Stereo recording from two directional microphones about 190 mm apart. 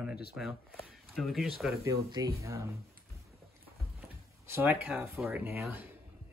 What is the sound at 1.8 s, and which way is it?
Speech, 15° right (ahead or behind).